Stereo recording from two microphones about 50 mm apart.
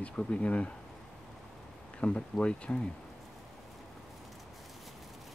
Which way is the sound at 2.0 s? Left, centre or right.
Left.